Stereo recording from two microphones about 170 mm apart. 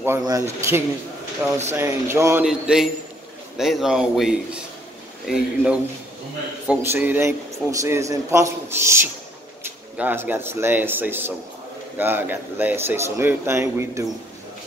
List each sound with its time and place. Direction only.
0.0 s a man's voice: 20° right (ahead or behind)